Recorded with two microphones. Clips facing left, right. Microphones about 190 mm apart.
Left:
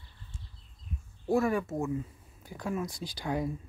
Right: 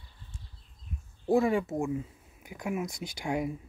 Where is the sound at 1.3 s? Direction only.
15° right (ahead or behind).